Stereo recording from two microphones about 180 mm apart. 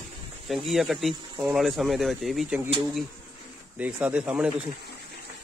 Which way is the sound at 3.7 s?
10° right (ahead or behind).